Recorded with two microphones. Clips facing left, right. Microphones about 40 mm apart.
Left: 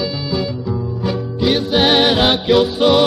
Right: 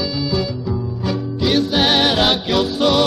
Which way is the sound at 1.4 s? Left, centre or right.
Centre.